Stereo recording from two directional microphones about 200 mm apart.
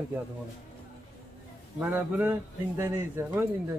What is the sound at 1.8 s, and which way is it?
Speech, 10° right (ahead or behind).